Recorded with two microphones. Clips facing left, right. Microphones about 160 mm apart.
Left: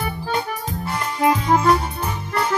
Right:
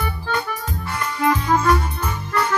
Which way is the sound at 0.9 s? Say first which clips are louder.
Left 1 dB; 30° left (ahead or behind).